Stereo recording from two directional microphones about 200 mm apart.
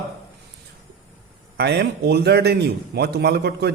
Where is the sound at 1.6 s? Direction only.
55° right (ahead or behind).